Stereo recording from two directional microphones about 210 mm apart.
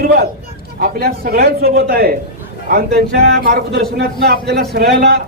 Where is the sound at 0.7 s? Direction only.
45° right (ahead or behind).